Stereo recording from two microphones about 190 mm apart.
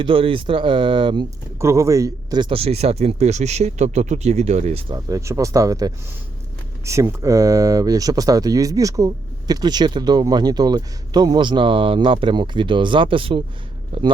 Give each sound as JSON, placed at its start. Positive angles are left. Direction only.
{"t": 0.0, "sound": "speech", "side_deg": -30}
{"t": 5.0, "sound": "speech", "side_deg": -15}